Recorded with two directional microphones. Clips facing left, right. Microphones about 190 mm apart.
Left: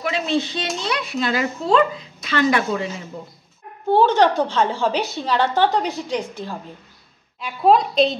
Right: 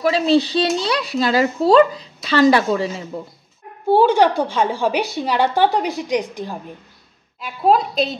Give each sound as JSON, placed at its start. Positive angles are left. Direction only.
{"t": 0.0, "sound": "speech", "side_deg": -35}
{"t": 3.9, "sound": "a woman's voice", "side_deg": -10}
{"t": 7.3, "sound": "a woman's voice", "side_deg": 0}